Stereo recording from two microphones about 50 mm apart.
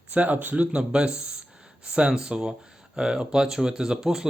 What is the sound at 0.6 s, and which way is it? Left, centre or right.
Speech, centre.